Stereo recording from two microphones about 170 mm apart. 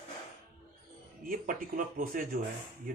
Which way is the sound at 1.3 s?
50° right (ahead or behind).